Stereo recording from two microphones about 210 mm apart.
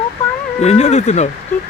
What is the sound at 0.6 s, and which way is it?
Speech, 30° left (ahead or behind).